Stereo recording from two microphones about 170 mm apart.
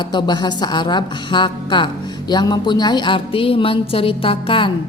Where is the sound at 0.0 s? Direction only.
25° left (ahead or behind).